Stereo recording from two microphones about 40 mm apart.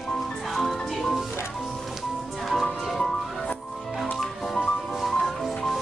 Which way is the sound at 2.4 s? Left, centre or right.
Centre.